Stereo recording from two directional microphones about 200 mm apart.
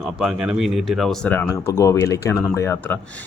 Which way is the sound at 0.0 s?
Centre (ahead or behind).